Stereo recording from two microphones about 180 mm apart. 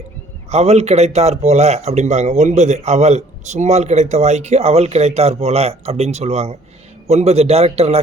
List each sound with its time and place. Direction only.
0.5 s speech: 35° right (ahead or behind)